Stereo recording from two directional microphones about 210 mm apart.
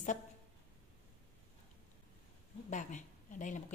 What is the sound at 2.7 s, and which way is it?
Speech, 35° left (ahead or behind).